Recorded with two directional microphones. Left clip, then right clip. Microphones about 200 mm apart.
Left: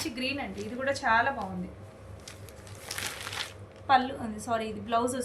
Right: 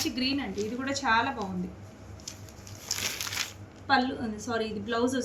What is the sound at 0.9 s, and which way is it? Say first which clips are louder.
Speech: left 1 dB; 55° left (ahead or behind).